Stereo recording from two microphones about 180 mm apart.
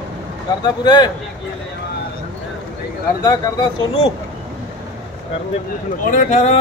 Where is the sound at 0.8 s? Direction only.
25° left (ahead or behind).